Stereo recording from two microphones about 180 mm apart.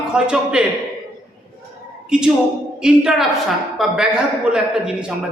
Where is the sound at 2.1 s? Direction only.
5° right (ahead or behind).